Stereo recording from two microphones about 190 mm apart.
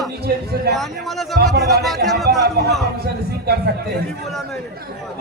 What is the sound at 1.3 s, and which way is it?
Speech, 55° right (ahead or behind).